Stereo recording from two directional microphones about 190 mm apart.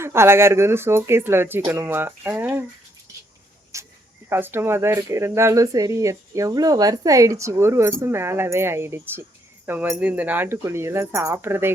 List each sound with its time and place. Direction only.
0.0 s speech: 15° right (ahead or behind)
3.7 s cricket: 15° right (ahead or behind)
4.3 s speech: 10° right (ahead or behind)